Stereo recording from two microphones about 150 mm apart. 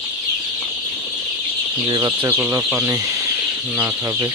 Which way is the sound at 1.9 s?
25° right (ahead or behind).